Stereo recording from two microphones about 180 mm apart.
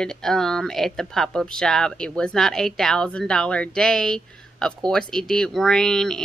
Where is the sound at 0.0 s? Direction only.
5° left (ahead or behind).